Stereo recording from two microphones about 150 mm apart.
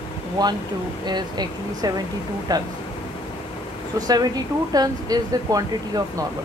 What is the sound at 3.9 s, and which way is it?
Speech, 25° right (ahead or behind).